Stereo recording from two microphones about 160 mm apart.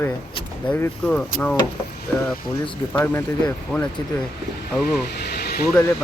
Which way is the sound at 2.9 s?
10° left (ahead or behind).